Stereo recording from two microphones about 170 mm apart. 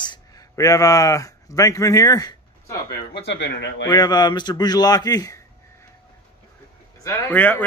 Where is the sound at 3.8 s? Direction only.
25° left (ahead or behind).